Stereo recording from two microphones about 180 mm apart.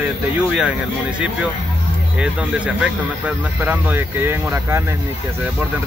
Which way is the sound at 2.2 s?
5° right (ahead or behind).